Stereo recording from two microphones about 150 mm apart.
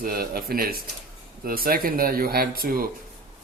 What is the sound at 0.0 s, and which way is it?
Speech, 85° right.